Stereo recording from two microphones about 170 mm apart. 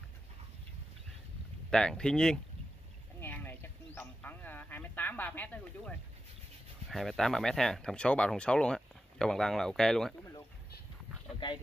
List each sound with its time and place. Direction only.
1.7 s speech: 5° left (ahead or behind)
3.2 s a sound: 10° left (ahead or behind)
6.9 s speech: centre (ahead or behind)
11.3 s speech: 25° left (ahead or behind)